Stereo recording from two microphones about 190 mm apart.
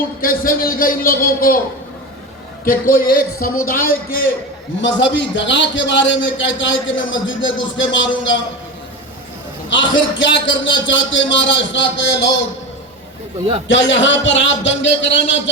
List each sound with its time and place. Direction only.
0.2 s a man's voice: 50° left (ahead or behind)
2.6 s a man's voice: 50° left (ahead or behind)
4.8 s a man's voice: 75° left (ahead or behind)
9.6 s a man's voice: 75° left (ahead or behind)
13.7 s a man's voice: 70° left (ahead or behind)